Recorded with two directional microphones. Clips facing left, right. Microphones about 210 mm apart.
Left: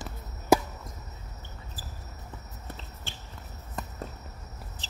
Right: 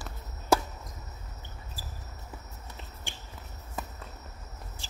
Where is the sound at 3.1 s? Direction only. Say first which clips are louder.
Even; 15° right (ahead or behind).